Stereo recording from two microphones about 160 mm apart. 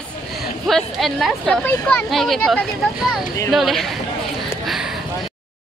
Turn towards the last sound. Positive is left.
turn(degrees=0)  # may be behind; listen again after turning